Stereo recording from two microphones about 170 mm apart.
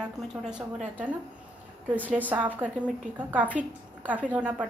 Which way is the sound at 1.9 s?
10° right (ahead or behind).